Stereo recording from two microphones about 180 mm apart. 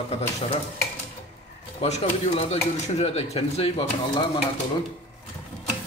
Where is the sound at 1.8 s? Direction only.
35° left (ahead or behind).